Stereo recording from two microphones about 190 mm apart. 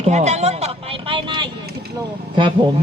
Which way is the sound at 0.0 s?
35° right (ahead or behind).